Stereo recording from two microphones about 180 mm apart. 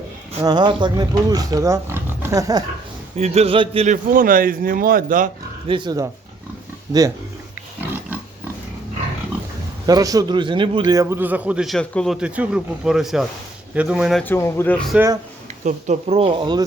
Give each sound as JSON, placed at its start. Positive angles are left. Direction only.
{"t": 0.4, "sound": "speech", "side_deg": -25}
{"t": 3.2, "sound": "speech", "side_deg": -35}
{"t": 3.8, "sound": "a man's voice", "side_deg": -50}
{"t": 5.6, "sound": "speech", "side_deg": -25}
{"t": 9.8, "sound": "a man's voice", "side_deg": -20}
{"t": 14.3, "sound": "speech", "side_deg": 15}
{"t": 14.9, "sound": "a man's voice", "side_deg": -15}
{"t": 15.6, "sound": "speech", "side_deg": -40}